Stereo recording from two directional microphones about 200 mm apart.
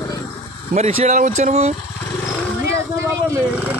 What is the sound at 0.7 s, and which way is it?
A man's voice, 35° right (ahead or behind).